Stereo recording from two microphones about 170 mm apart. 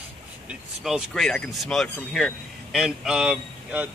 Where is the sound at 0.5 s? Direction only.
5° right (ahead or behind).